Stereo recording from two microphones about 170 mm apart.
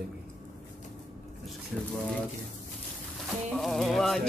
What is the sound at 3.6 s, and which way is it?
Speech, centre (ahead or behind).